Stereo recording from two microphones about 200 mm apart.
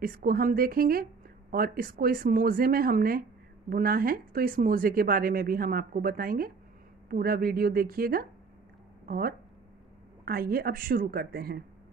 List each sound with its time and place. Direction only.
0.0 s speech: 45° right (ahead or behind)